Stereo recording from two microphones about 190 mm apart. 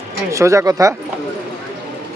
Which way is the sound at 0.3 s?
15° right (ahead or behind).